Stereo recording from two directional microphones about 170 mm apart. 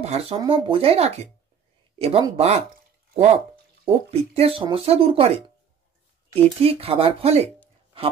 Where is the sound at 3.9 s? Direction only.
35° right (ahead or behind).